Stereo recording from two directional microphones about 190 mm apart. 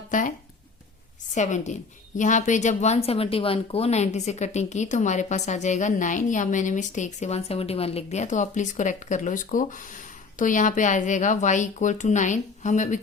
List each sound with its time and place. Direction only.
0.1 s speech: 45° left (ahead or behind)
1.4 s a woman's voice: 40° left (ahead or behind)